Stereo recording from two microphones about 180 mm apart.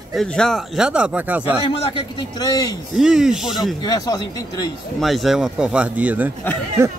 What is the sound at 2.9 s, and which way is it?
Speech, 5° right (ahead or behind).